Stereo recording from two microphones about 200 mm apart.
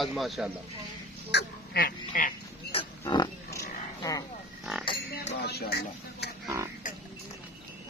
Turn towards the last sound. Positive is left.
turn(degrees=-15)  # may be behind; listen again after turning